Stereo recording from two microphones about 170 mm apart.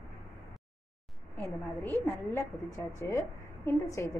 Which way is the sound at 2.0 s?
15° left (ahead or behind).